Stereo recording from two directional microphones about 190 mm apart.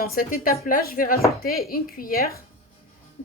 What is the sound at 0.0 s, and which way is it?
Speech, 50° left (ahead or behind).